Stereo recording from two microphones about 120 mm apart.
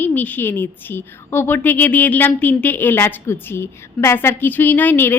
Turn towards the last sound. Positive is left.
turn(degrees=15)  # may be behind; listen again after turning